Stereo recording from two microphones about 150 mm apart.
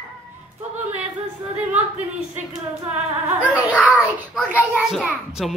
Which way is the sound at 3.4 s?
10° right (ahead or behind).